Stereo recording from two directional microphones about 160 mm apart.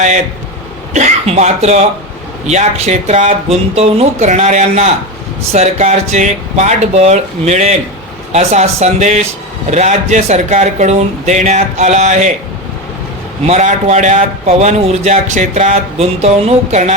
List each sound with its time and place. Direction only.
0.9 s a man's voice: 45° right (ahead or behind)
13.5 s a man's voice: 45° right (ahead or behind)